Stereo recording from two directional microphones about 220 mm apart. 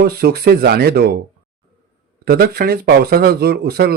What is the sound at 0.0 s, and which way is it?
Speech, 45° right (ahead or behind).